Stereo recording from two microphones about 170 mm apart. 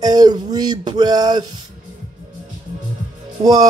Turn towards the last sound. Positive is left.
turn(degrees=-20)  # may be behind; listen again after turning